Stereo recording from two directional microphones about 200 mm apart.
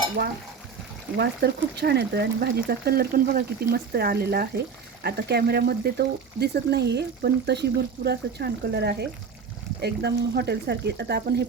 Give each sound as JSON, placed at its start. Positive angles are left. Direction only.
{"t": 0.2, "sound": "speech", "side_deg": -50}